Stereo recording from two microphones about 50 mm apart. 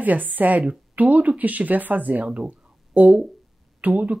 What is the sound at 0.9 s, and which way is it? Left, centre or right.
Speech, right.